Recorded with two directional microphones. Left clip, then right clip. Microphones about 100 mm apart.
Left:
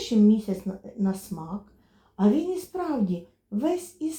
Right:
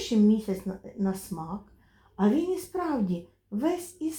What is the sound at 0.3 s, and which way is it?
A woman's voice, 25° left (ahead or behind).